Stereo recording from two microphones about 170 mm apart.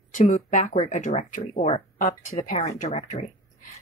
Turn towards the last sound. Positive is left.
turn(degrees=45)  # may be behind; listen again after turning